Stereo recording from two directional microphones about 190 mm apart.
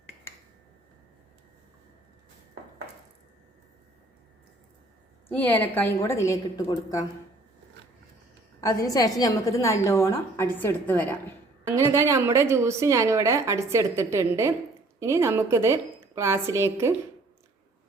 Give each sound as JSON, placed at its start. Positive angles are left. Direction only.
{"t": 5.3, "sound": "a woman's voice", "side_deg": 10}
{"t": 8.6, "sound": "a woman's voice", "side_deg": 20}
{"t": 11.6, "sound": "a woman's voice", "side_deg": -15}